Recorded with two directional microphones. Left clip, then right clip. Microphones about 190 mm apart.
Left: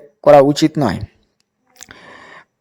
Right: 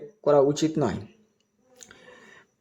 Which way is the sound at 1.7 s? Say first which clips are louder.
Left 11 dB; 45° left (ahead or behind).